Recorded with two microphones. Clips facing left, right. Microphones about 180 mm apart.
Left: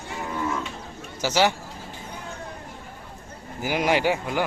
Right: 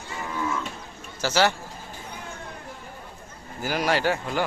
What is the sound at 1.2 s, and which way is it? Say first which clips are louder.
Speech: left 1 dB; 15° left (ahead or behind).